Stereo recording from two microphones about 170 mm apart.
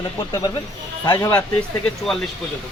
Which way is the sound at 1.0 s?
25° left (ahead or behind).